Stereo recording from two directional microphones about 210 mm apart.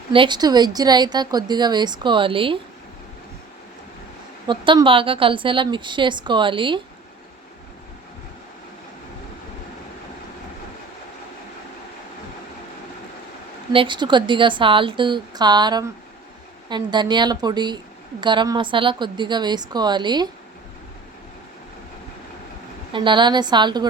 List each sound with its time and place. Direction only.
0.1 s speech: 20° right (ahead or behind)
4.4 s speech: 20° right (ahead or behind)
13.7 s speech: 20° right (ahead or behind)
22.9 s speech: 20° right (ahead or behind)